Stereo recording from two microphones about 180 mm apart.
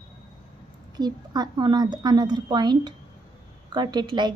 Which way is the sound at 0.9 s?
20° right (ahead or behind).